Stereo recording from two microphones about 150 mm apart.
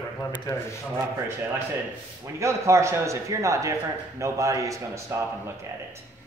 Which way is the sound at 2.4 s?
20° right (ahead or behind).